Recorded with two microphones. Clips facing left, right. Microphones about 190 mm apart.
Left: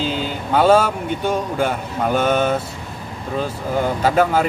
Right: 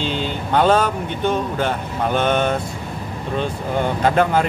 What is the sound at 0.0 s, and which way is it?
Speech, 5° left (ahead or behind).